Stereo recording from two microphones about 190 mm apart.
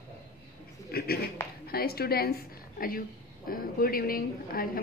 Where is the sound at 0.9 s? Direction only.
55° left (ahead or behind).